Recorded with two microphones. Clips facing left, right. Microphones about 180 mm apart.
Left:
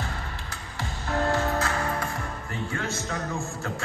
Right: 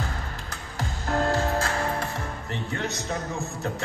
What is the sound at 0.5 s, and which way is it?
Music, 45° right (ahead or behind).